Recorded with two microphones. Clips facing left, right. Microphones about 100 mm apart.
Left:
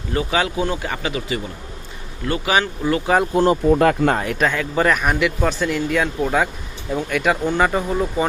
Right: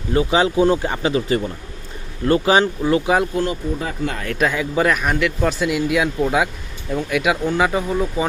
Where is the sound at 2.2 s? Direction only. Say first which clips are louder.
Right 5 dB; 35° right (ahead or behind).